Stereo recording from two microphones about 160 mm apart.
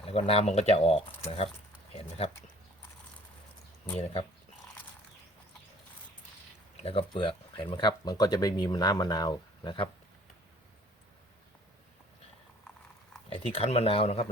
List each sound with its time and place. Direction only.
0.0 s speech: 35° left (ahead or behind)
3.9 s speech: 35° left (ahead or behind)
6.8 s speech: 35° left (ahead or behind)
13.3 s speech: 35° left (ahead or behind)